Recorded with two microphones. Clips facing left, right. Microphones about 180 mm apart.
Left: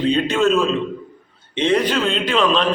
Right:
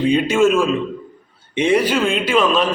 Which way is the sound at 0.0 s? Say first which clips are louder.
Right 3 dB; 10° right (ahead or behind).